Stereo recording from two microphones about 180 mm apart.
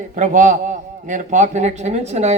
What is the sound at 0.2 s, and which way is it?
A man's voice, 45° right (ahead or behind).